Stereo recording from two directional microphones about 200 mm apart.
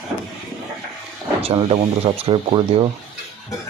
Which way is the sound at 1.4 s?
30° right (ahead or behind).